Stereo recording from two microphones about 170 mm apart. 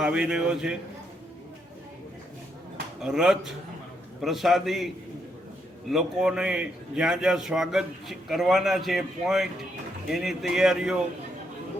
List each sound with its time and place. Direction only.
0.0 s a man's voice: 5° right (ahead or behind)
3.0 s a man's voice: 5° right (ahead or behind)
5.9 s a man's voice: 5° right (ahead or behind)